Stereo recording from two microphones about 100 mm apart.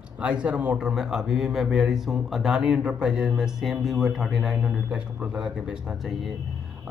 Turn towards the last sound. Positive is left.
turn(degrees=-5)  # may be behind; listen again after turning